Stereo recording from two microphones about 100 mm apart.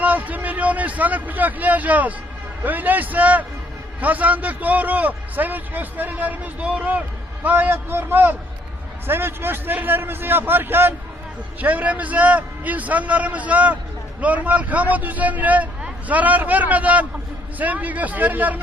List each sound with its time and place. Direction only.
0.0 s a man's voice: 15° right (ahead or behind)